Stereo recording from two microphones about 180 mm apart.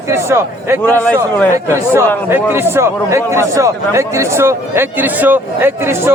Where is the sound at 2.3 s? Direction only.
15° right (ahead or behind).